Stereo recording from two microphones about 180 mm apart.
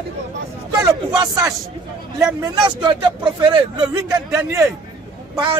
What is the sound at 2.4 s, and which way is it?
A man's voice, 25° right (ahead or behind).